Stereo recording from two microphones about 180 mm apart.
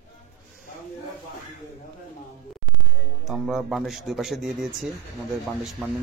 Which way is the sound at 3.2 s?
Centre (ahead or behind).